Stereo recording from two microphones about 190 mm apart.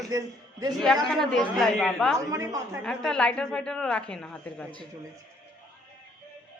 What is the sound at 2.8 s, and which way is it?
A woman's voice, 5° left (ahead or behind).